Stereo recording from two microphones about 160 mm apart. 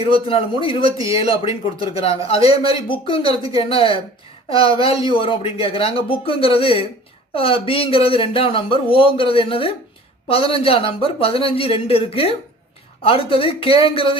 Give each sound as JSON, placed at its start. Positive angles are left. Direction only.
{"t": 0.0, "sound": "a man's voice", "side_deg": 35}
{"t": 0.9, "sound": "speech", "side_deg": -20}
{"t": 1.1, "sound": "a man's voice", "side_deg": 35}